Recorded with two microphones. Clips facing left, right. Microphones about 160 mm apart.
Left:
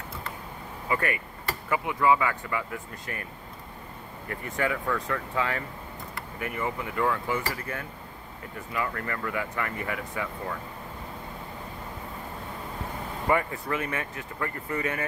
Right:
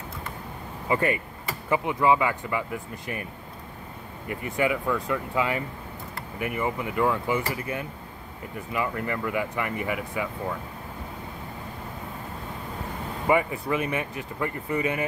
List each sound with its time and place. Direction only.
0.8 s speech: 25° right (ahead or behind)
4.3 s speech: 10° right (ahead or behind)
13.3 s speech: 15° right (ahead or behind)